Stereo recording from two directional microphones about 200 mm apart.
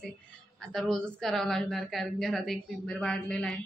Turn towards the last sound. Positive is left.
turn(degrees=5)  # may be behind; listen again after turning